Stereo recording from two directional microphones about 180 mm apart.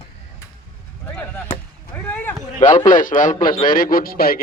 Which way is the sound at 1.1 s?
10° left (ahead or behind).